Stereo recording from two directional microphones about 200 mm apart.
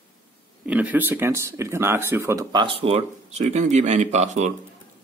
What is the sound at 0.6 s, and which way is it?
Speech, 5° right (ahead or behind).